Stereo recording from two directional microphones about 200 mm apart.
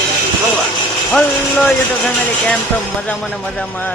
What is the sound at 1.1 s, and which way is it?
Speech, 10° left (ahead or behind).